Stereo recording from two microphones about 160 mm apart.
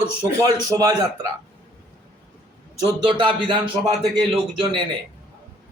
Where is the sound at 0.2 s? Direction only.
25° right (ahead or behind).